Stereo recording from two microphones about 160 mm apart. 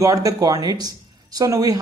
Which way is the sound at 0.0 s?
20° right (ahead or behind).